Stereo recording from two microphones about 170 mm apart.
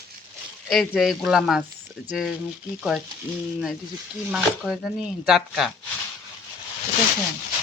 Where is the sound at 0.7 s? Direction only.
Centre (ahead or behind).